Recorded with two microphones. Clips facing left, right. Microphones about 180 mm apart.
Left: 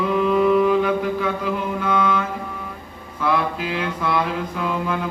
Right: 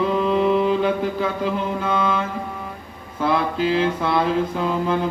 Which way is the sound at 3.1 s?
30° right (ahead or behind).